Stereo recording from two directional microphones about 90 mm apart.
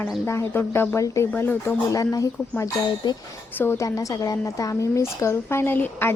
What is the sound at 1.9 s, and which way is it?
A woman's voice, 40° left (ahead or behind).